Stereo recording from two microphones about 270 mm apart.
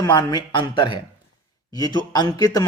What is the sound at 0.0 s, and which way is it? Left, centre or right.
Speech, centre.